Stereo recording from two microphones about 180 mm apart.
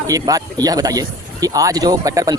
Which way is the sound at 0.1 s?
20° right (ahead or behind).